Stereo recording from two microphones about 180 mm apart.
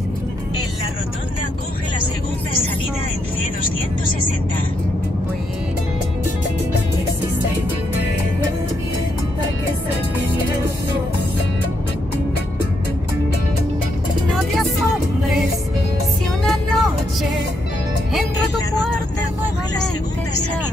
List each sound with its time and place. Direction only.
16.4 s vehicle: centre (ahead or behind)